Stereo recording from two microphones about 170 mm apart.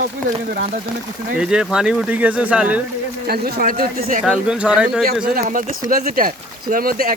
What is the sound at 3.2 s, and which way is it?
Speech, 65° right (ahead or behind).